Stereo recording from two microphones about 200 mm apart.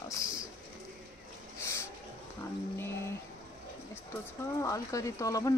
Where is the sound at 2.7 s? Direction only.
10° left (ahead or behind).